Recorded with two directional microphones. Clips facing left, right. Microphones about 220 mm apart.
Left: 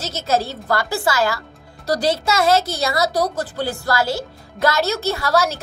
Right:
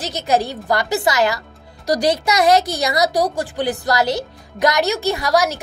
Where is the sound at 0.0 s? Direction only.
15° right (ahead or behind).